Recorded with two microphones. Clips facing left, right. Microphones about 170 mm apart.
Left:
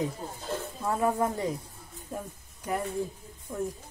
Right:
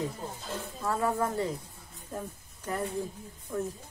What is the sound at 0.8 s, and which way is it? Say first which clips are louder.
Speech: left 2 dB; 20° left (ahead or behind).